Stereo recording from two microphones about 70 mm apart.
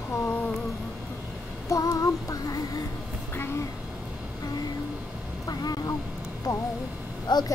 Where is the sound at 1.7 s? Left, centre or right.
Left.